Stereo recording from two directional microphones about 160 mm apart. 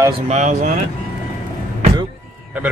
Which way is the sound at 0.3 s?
50° right (ahead or behind).